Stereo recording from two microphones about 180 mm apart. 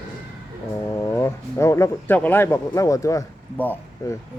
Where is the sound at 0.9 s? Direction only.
15° left (ahead or behind).